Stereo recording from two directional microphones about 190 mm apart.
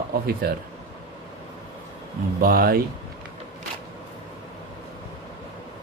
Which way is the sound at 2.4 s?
50° right (ahead or behind).